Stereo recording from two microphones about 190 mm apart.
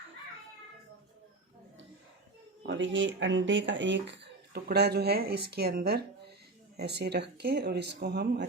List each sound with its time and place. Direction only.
2.6 s speech: 75° right (ahead or behind)